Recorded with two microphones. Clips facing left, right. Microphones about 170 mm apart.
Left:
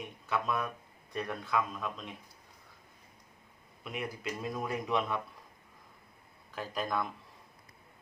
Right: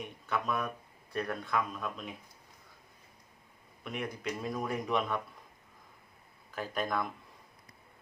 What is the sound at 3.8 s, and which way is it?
Speech, 5° left (ahead or behind).